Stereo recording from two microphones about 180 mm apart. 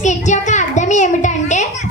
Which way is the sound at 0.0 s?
40° left (ahead or behind).